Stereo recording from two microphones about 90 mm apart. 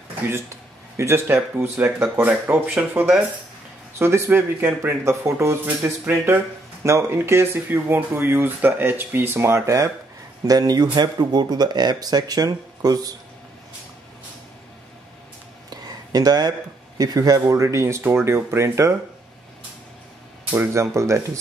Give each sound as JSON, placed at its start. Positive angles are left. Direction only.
{"t": 0.3, "sound": "speech", "side_deg": -30}
{"t": 15.7, "sound": "a sound", "side_deg": -45}
{"t": 17.0, "sound": "speech", "side_deg": -45}
{"t": 20.7, "sound": "speech", "side_deg": -35}